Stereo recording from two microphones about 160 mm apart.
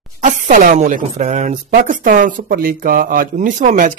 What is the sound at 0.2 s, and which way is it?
A woman's voice, 55° right (ahead or behind).